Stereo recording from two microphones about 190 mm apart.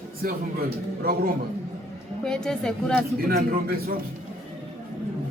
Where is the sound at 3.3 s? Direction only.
50° right (ahead or behind).